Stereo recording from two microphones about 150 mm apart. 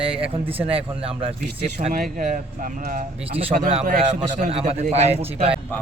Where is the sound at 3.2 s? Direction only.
40° right (ahead or behind).